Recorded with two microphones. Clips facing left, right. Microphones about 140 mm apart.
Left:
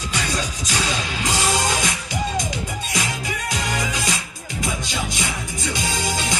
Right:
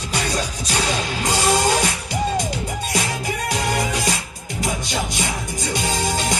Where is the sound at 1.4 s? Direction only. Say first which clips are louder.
Right 6 dB; 35° right (ahead or behind).